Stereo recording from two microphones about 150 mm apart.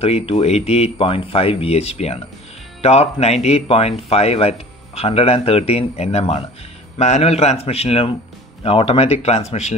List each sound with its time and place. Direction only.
0.0 s speech: 40° left (ahead or behind)